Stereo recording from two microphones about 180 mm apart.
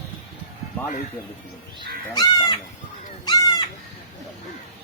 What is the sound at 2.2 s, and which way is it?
Speech, 25° left (ahead or behind).